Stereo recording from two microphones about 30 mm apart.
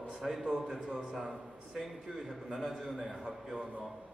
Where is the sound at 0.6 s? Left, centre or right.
Right; by 3.5 s centre.